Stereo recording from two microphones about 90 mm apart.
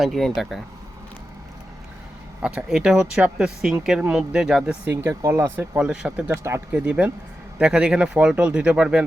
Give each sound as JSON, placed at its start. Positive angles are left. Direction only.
{"t": 0.0, "sound": "speech", "side_deg": 0}
{"t": 2.4, "sound": "speech", "side_deg": -10}
{"t": 4.9, "sound": "speech", "side_deg": -25}
{"t": 5.7, "sound": "speech", "side_deg": -10}
{"t": 6.3, "sound": "speech", "side_deg": -30}
{"t": 6.7, "sound": "speech", "side_deg": -15}